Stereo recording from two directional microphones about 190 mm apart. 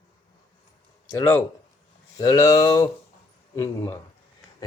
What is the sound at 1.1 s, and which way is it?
Speech, 10° left (ahead or behind).